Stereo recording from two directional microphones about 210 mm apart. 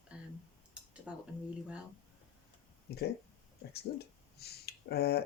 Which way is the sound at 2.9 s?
50° left (ahead or behind).